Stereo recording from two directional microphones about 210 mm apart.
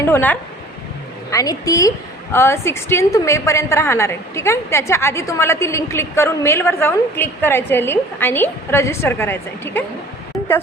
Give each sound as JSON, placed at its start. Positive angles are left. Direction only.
{"t": 0.0, "sound": "a woman's voice", "side_deg": 10}